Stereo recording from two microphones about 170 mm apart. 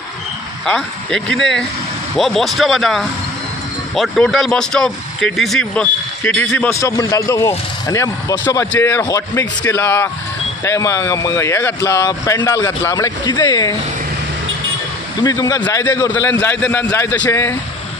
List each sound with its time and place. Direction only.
0.7 s speech: 5° left (ahead or behind)
6.7 s speech: 20° left (ahead or behind)
15.2 s speech: 25° left (ahead or behind)